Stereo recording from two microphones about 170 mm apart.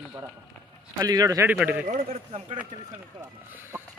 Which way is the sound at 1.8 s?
35° right (ahead or behind).